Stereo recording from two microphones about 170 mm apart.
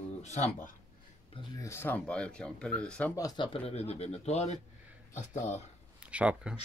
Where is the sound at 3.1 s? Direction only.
25° left (ahead or behind); by 5.6 s 45° left (ahead or behind).